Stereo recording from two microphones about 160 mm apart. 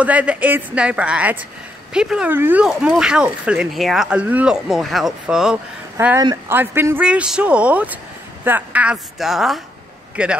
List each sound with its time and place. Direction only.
0.0 s a man's voice: 10° right (ahead or behind)